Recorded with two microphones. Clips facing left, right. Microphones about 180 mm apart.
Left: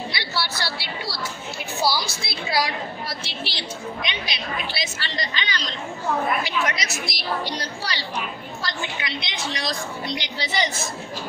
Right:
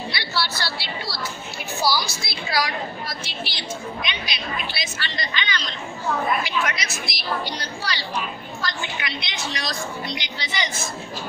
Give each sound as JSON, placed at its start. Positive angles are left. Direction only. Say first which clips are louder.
{"t": 0.1, "sound": "a sound", "louder": "right 1 dB", "side_deg": 20}
{"t": 1.8, "sound": "music", "louder": "right 1 dB", "side_deg": 25}
{"t": 2.2, "sound": "a woman's voice", "louder": "left 1 dB", "side_deg": 30}
{"t": 8.6, "sound": "a woman's voice", "louder": "even", "side_deg": 25}